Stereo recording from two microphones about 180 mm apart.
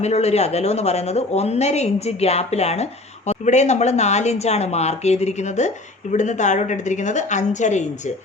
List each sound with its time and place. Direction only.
0.0 s speech: 35° left (ahead or behind)